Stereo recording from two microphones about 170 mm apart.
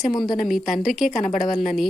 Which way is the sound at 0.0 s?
Centre (ahead or behind).